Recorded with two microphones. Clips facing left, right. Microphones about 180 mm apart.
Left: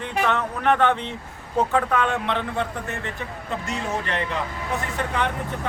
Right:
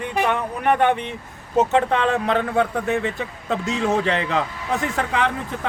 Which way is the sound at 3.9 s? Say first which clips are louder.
Right 6 dB; 90° right.